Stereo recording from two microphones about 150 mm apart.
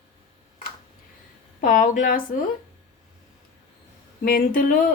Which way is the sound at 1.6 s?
60° left (ahead or behind).